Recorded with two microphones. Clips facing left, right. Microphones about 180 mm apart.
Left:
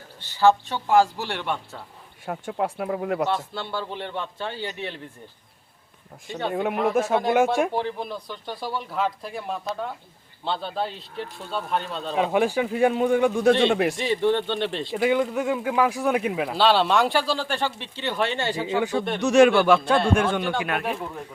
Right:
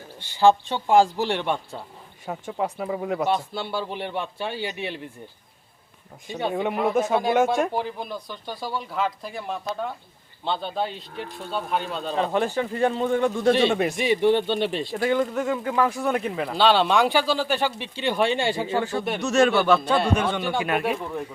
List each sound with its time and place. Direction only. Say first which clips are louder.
0.3 s a man's voice: right 1 dB; 15° right (ahead or behind)
2.2 s speech: left 1 dB; centre (ahead or behind)
3.2 s a man's voice: right 2 dB; 10° right (ahead or behind)
6.5 s speech: left 1 dB; centre (ahead or behind)
7.3 s speech: even; 10° left (ahead or behind)
12.1 s speech: left 2 dB; 10° left (ahead or behind)
13.5 s speech: even; 5° right (ahead or behind)
13.9 s a man's voice: right 2 dB; 15° right (ahead or behind)
14.9 s speech: left 2 dB; 10° left (ahead or behind); by 18.6 s 15° right (ahead or behind)
18.6 s speech: left 1 dB; 15° left (ahead or behind)
20.4 s speech: right 2 dB; 5° right (ahead or behind)